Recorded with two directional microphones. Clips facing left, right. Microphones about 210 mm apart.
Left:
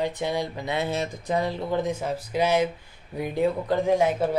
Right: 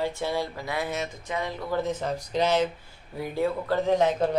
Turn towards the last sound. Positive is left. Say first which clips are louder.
# left 1 dB
turn(degrees=10)  # may be behind; listen again after turning